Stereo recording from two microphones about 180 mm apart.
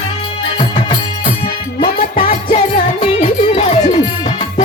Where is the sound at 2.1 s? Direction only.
40° left (ahead or behind).